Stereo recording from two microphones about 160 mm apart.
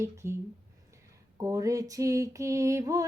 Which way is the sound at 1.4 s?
20° right (ahead or behind).